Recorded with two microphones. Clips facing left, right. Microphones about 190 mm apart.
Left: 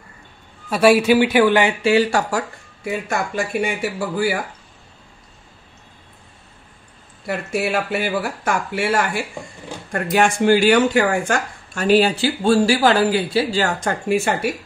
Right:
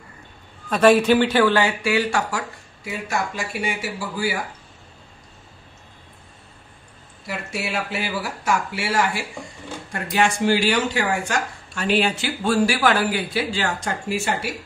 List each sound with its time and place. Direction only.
0.7 s speech: 10° left (ahead or behind); by 2.4 s 35° left (ahead or behind)
2.8 s speech: 55° left (ahead or behind)
7.2 s speech: 50° left (ahead or behind)